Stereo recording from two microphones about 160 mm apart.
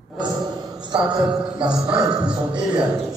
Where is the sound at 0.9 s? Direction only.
30° right (ahead or behind).